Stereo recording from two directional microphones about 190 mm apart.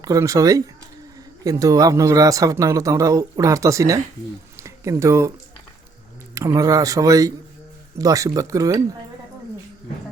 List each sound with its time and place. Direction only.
0.0 s speech: 15° right (ahead or behind)
6.3 s speech: 15° right (ahead or behind)